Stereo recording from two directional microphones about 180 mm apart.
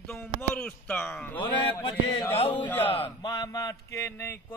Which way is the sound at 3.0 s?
20° left (ahead or behind).